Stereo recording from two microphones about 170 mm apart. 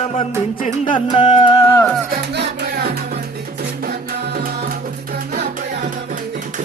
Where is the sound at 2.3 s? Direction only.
85° right; by 3.0 s 65° right (ahead or behind).